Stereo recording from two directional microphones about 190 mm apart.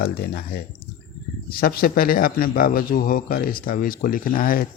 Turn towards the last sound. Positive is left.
turn(degrees=50)  # may be behind; listen again after turning